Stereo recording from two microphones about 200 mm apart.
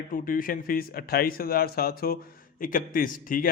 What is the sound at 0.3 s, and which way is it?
A man's voice, 45° left (ahead or behind).